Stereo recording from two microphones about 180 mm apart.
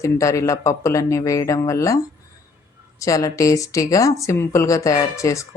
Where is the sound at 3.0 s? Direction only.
20° left (ahead or behind).